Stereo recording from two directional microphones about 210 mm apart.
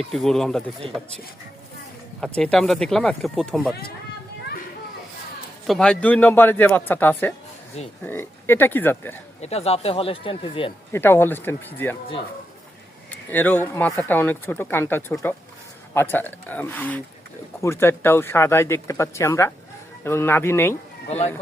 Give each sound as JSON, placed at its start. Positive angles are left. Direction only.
{"t": 0.0, "sound": "speech", "side_deg": 0}
{"t": 2.2, "sound": "speech", "side_deg": 5}
{"t": 5.6, "sound": "speech", "side_deg": 0}
{"t": 9.4, "sound": "speech", "side_deg": 30}
{"t": 10.9, "sound": "speech", "side_deg": 10}
{"t": 13.1, "sound": "speech", "side_deg": 10}
{"t": 21.1, "sound": "speech", "side_deg": 30}